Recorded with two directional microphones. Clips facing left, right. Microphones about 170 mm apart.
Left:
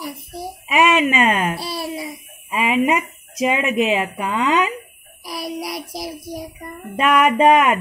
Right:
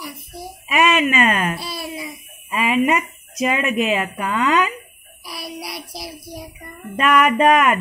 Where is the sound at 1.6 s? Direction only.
35° left (ahead or behind).